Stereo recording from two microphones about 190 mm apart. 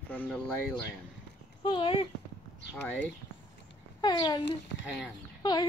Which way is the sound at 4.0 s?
20° left (ahead or behind).